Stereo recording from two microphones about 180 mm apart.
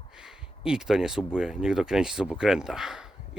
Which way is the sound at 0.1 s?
5° right (ahead or behind).